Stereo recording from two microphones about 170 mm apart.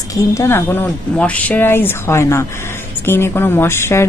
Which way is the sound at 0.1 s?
15° left (ahead or behind).